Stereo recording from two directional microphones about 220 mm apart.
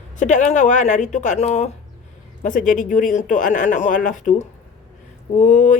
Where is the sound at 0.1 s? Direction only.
35° left (ahead or behind).